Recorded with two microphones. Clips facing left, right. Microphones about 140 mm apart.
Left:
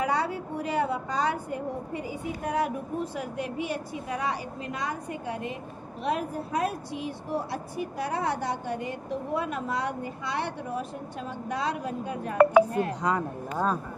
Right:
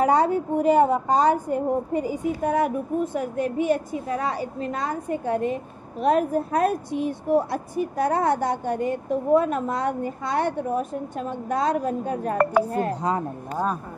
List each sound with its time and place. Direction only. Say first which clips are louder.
0.0 s a woman's voice: right 8 dB; 45° right (ahead or behind)